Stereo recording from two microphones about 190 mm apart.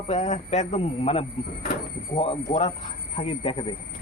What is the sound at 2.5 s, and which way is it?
Speech, 20° left (ahead or behind).